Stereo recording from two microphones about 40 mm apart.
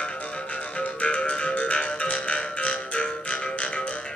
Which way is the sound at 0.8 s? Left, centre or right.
Left.